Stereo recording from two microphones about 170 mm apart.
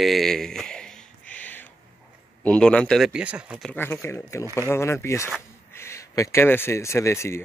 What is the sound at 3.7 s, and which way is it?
Speech, 15° left (ahead or behind).